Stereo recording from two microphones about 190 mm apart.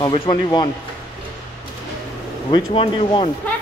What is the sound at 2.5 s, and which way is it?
Speech, 25° left (ahead or behind).